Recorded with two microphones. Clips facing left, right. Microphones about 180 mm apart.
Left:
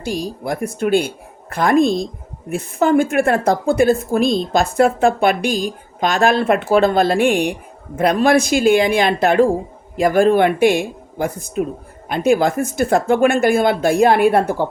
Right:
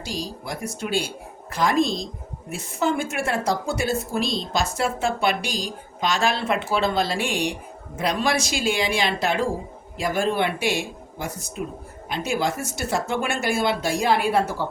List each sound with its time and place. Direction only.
0.0 s a woman's voice: 55° left (ahead or behind)